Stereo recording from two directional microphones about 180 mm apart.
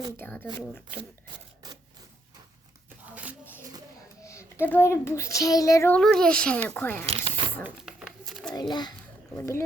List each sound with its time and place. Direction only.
0.2 s a child's voice: 10° left (ahead or behind)
1.6 s typewriter: 20° right (ahead or behind)
4.2 s a sound: 15° left (ahead or behind)
4.7 s a child's voice: 15° left (ahead or behind)
6.0 s speech: 5° left (ahead or behind)
7.0 s zipper: 30° right (ahead or behind)
7.6 s a sound: 5° right (ahead or behind)
8.5 s a child's voice: 25° left (ahead or behind)